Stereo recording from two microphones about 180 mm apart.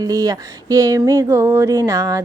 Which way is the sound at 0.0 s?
20° right (ahead or behind).